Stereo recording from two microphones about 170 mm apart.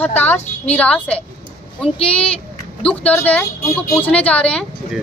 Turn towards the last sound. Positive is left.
turn(degrees=5)  # may be behind; listen again after turning